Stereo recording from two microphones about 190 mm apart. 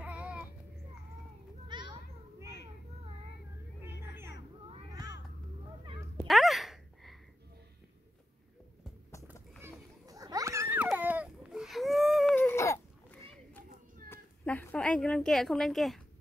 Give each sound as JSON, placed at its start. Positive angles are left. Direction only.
{"t": 0.0, "sound": "a sound", "side_deg": -5}
{"t": 1.7, "sound": "children playing", "side_deg": -25}
{"t": 3.8, "sound": "music", "side_deg": -10}
{"t": 6.2, "sound": "a sound", "side_deg": 0}
{"t": 9.6, "sound": "children playing", "side_deg": -20}
{"t": 12.4, "sound": "baby cry", "side_deg": 15}
{"t": 13.3, "sound": "children playing", "side_deg": 5}
{"t": 14.0, "sound": "cat", "side_deg": 10}